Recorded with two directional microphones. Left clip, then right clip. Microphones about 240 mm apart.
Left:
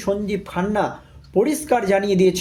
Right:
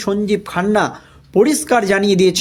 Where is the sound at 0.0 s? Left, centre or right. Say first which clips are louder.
Right 5 dB; right.